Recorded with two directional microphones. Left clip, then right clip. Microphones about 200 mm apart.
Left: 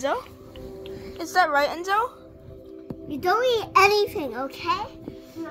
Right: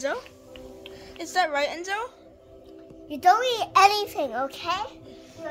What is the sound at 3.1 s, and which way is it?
A child's voice, 30° right (ahead or behind).